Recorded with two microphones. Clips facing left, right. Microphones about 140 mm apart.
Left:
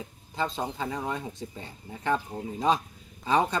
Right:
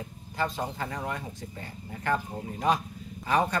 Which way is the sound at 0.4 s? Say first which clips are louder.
Even; 15° left (ahead or behind).